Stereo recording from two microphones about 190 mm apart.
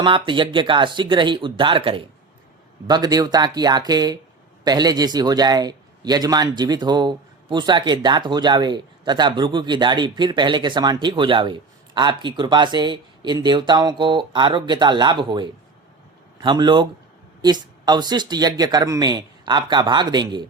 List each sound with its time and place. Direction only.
0.0 s a man's voice: 25° right (ahead or behind)